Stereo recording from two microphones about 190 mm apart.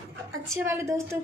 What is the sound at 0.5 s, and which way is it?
Speech, 15° right (ahead or behind).